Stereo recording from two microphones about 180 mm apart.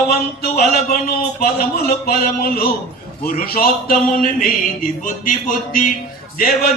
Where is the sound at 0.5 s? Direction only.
55° left (ahead or behind).